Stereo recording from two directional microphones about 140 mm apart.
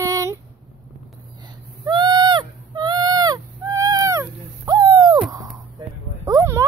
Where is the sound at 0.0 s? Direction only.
20° right (ahead or behind).